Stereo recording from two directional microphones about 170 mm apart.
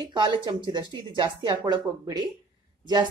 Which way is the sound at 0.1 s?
25° right (ahead or behind).